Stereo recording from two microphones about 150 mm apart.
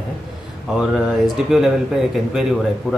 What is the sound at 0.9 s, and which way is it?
Speech, centre (ahead or behind).